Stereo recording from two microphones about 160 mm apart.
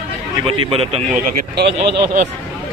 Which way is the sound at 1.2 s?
90° right.